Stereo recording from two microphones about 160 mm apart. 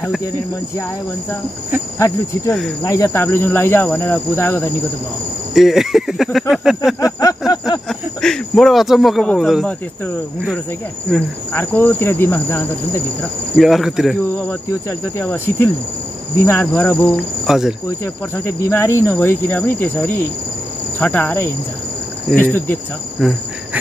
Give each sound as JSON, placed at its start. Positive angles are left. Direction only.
{"t": 2.0, "sound": "cricket", "side_deg": 20}
{"t": 2.8, "sound": "speech", "side_deg": 20}
{"t": 5.5, "sound": "speech", "side_deg": 0}
{"t": 7.0, "sound": "a sound", "side_deg": 20}
{"t": 7.9, "sound": "speech", "side_deg": 5}
{"t": 11.1, "sound": "speech", "side_deg": 10}
{"t": 13.6, "sound": "speech", "side_deg": 0}
{"t": 14.5, "sound": "speech", "side_deg": 15}
{"t": 17.5, "sound": "speech", "side_deg": -5}
{"t": 17.8, "sound": "speech", "side_deg": 15}
{"t": 23.2, "sound": "speech", "side_deg": 0}